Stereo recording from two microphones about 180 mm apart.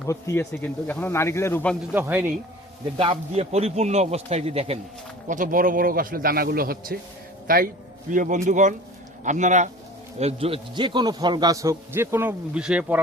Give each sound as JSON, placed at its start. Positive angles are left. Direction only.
{"t": 0.1, "sound": "speech", "side_deg": 15}
{"t": 1.9, "sound": "a man's voice", "side_deg": -10}
{"t": 3.0, "sound": "a man's voice", "side_deg": -35}
{"t": 5.3, "sound": "a man's voice", "side_deg": -50}